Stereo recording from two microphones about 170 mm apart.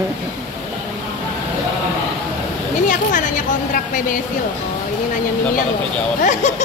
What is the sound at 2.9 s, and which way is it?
A woman's voice, 50° left (ahead or behind).